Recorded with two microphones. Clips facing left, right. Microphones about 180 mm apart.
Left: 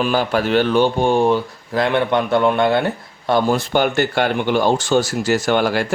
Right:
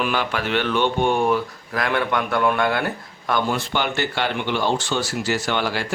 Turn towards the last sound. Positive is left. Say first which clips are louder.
# left 6 dB
turn(degrees=50)  # may be behind; listen again after turning